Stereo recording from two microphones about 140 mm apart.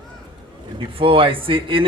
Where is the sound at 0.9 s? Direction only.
40° right (ahead or behind).